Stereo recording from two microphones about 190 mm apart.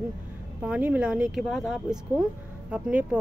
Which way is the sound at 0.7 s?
5° right (ahead or behind).